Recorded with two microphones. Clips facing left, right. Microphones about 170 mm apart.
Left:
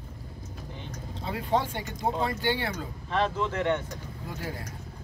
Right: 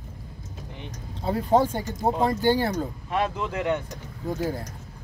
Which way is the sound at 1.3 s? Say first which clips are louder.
Right 7 dB; 40° right (ahead or behind).